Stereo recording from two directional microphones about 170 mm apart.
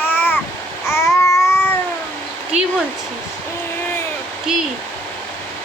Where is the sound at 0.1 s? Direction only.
10° left (ahead or behind).